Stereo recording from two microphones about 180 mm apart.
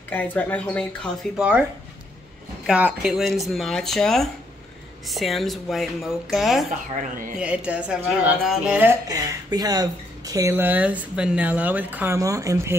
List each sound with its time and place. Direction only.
0.1 s speech: 10° left (ahead or behind)
2.6 s speech: 5° right (ahead or behind)
7.0 s speech: 50° right (ahead or behind)
7.3 s speech: 5° right (ahead or behind)
9.1 s speech: 20° right (ahead or behind)